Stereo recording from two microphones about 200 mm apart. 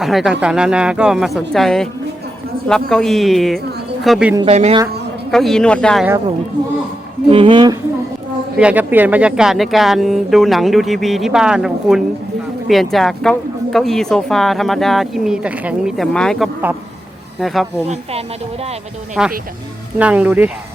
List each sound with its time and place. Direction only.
0.0 s speech: centre (ahead or behind)
4.4 s speech: 30° right (ahead or behind)
5.3 s speech: centre (ahead or behind)
7.3 s speech: 25° right (ahead or behind)
8.5 s speech: 5° right (ahead or behind)
19.2 s speech: 5° right (ahead or behind)